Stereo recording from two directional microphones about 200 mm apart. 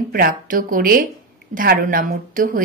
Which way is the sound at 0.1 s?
45° right (ahead or behind).